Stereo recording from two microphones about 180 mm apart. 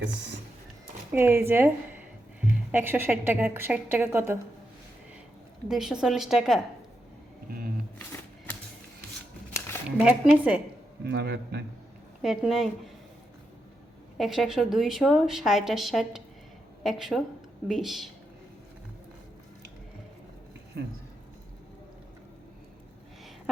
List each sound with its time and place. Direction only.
1.1 s a woman's voice: 15° right (ahead or behind)
5.6 s a woman's voice: 5° right (ahead or behind)
7.4 s music: 55° right (ahead or behind)
10.0 s a woman's voice: 5° right (ahead or behind)
11.0 s speech: 70° right (ahead or behind)
12.2 s a woman's voice: centre (ahead or behind)
14.2 s a woman's voice: centre (ahead or behind)